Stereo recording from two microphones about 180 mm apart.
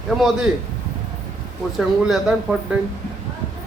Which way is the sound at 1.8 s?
Centre (ahead or behind).